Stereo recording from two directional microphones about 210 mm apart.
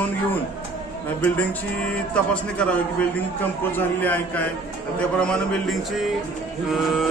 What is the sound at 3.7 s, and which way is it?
Mantra, 10° left (ahead or behind).